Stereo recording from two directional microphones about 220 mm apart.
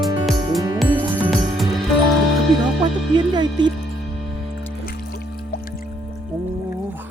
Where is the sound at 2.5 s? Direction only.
20° right (ahead or behind).